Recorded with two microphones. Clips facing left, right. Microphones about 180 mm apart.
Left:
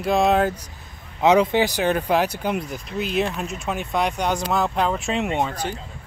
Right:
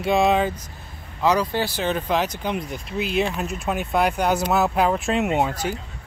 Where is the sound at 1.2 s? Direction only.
25° left (ahead or behind); by 5.8 s 10° right (ahead or behind).